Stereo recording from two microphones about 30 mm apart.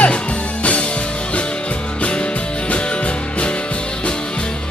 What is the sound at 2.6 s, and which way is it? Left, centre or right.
Music, left.